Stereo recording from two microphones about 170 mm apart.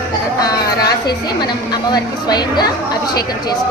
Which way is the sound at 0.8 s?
25° left (ahead or behind).